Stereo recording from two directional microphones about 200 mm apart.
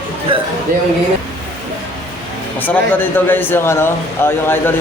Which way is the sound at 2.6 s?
10° left (ahead or behind).